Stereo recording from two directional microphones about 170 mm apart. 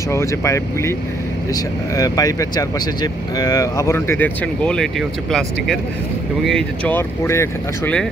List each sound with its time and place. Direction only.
0.1 s speech: 15° left (ahead or behind)
6.4 s speech: 5° left (ahead or behind)